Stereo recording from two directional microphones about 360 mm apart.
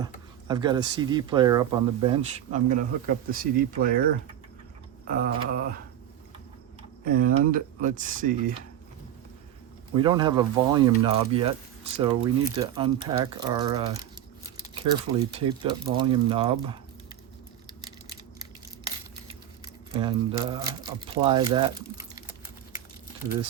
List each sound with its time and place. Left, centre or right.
0.0 s speech: centre
5.0 s speech: right
7.0 s speech: right
9.9 s speech: centre
17.8 s a sound: centre
19.9 s speech: centre